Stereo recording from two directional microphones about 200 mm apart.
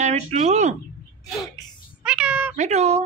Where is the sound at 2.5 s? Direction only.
35° right (ahead or behind).